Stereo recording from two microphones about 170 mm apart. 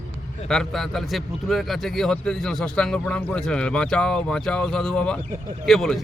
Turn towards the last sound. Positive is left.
turn(degrees=0)  # may be behind; listen again after turning